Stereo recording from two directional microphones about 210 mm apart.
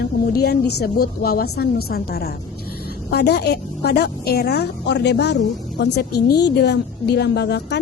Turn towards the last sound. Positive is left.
turn(degrees=50)  # may be behind; listen again after turning